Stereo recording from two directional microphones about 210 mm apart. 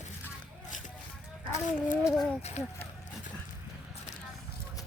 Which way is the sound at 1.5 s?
35° left (ahead or behind).